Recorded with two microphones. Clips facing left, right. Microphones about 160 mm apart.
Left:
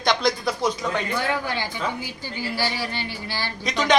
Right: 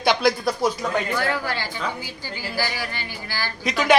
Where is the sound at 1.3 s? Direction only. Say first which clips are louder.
Even; 20° left (ahead or behind).